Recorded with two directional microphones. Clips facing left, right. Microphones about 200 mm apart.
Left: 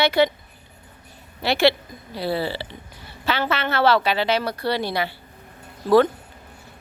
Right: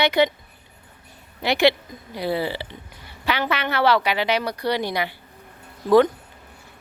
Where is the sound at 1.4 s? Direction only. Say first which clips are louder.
Even; 15° right (ahead or behind).